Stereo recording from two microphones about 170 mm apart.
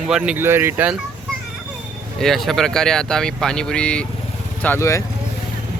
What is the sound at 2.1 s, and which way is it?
Speech, centre (ahead or behind).